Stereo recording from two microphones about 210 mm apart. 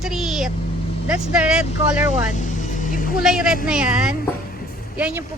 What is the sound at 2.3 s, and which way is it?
Music, 35° left (ahead or behind).